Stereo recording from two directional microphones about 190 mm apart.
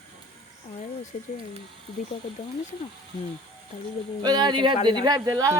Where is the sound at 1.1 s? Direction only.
35° left (ahead or behind).